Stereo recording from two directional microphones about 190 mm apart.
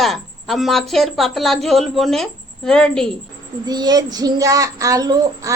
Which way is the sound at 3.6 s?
20° right (ahead or behind).